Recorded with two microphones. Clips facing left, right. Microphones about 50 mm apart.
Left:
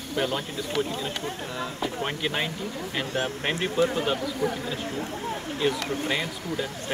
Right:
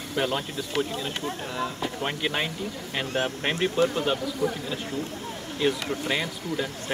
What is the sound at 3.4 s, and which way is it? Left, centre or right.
Speech, centre.